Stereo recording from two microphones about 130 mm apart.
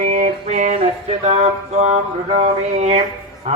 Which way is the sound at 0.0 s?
70° right (ahead or behind).